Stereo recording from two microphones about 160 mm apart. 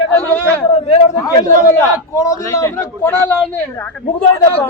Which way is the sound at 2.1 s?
20° left (ahead or behind).